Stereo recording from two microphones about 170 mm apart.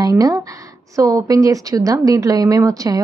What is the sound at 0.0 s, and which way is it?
Speech, 20° right (ahead or behind).